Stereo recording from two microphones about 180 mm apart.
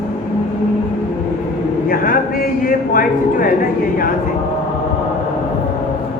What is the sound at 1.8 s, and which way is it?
A man's voice, 55° left (ahead or behind).